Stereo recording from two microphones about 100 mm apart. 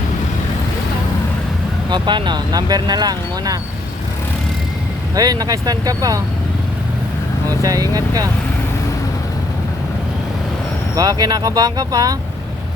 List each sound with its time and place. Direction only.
1.9 s speech: 50° right (ahead or behind)
5.1 s speech: 40° right (ahead or behind)
7.6 s speech: 35° right (ahead or behind)
10.9 s speech: 40° right (ahead or behind)